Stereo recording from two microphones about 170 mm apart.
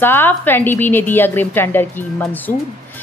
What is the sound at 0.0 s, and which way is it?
A woman's voice, 10° left (ahead or behind).